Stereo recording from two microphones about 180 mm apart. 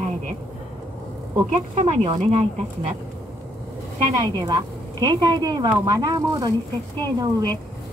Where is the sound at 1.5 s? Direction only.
35° right (ahead or behind).